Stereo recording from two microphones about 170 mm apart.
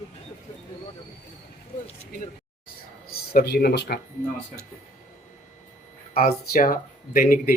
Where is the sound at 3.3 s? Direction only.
65° left (ahead or behind).